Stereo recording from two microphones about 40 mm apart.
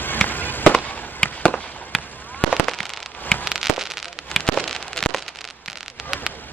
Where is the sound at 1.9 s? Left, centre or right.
Centre.